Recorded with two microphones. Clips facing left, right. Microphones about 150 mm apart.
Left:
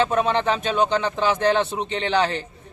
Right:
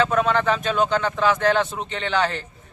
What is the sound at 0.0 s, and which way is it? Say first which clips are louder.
A man's voice: even; 30° left (ahead or behind).